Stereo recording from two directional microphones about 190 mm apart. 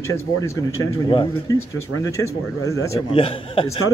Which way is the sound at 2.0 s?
15° left (ahead or behind).